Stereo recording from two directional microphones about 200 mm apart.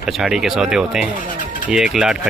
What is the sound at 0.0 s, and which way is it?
Speech, 5° right (ahead or behind).